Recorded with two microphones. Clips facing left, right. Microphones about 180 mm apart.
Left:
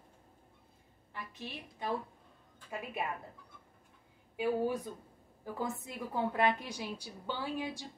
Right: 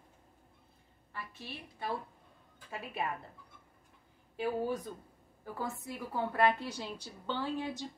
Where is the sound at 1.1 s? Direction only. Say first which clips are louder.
Left 1 dB; 20° left (ahead or behind).